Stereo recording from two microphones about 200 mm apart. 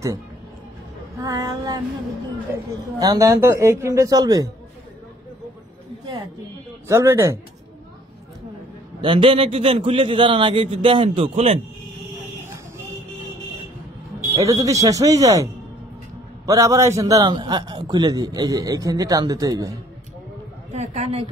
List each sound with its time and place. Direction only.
1.2 s a man's voice: 15° right (ahead or behind)
6.9 s a man's voice: 15° right (ahead or behind)
9.0 s a man's voice: 25° right (ahead or behind)
14.3 s a man's voice: 15° right (ahead or behind)
20.7 s a woman's voice: 35° right (ahead or behind)